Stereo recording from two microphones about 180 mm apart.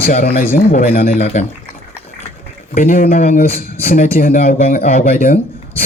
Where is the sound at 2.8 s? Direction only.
55° left (ahead or behind).